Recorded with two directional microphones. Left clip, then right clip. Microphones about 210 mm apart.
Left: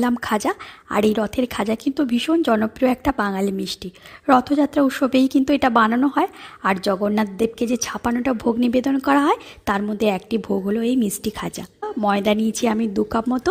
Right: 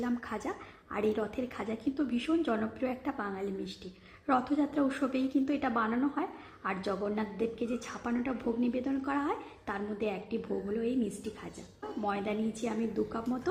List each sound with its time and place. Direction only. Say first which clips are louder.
0.0 s a woman's voice: left 15 dB; 50° left (ahead or behind)
12.0 s a woman's voice: left 15 dB; 50° left (ahead or behind)